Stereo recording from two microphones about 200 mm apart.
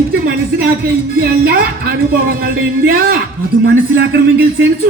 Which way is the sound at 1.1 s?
50° right (ahead or behind).